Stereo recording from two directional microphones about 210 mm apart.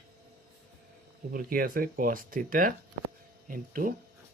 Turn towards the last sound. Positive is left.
turn(degrees=-40)  # may be behind; listen again after turning